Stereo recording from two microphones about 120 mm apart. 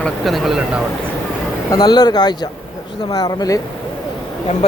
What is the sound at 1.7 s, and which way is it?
Speech, 35° left (ahead or behind).